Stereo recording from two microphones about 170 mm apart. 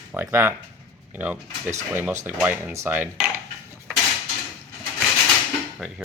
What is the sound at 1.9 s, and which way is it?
Speech, 15° right (ahead or behind).